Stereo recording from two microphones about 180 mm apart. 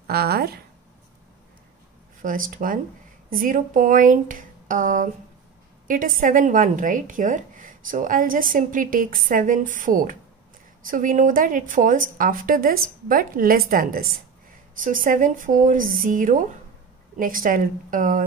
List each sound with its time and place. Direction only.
0.0 s speech: 60° right (ahead or behind)
2.2 s speech: 50° right (ahead or behind)